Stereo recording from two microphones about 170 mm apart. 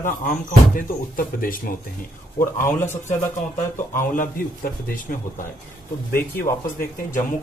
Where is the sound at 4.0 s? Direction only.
55° left (ahead or behind).